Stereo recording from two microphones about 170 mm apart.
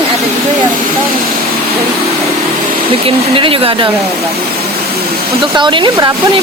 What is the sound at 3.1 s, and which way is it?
Speech, 30° right (ahead or behind).